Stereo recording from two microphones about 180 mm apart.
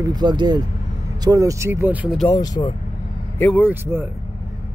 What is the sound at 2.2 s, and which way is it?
Speech, 20° left (ahead or behind).